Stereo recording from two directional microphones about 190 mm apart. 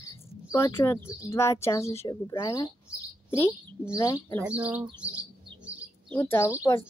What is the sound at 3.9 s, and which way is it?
Speech, 20° left (ahead or behind).